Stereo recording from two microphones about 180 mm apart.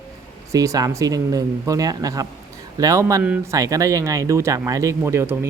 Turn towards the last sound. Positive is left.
turn(degrees=-15)  # may be behind; listen again after turning